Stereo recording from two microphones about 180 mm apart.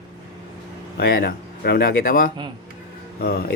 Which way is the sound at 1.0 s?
60° left (ahead or behind).